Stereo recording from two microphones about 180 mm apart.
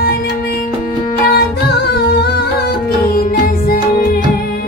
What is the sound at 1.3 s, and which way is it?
Music, 60° left (ahead or behind).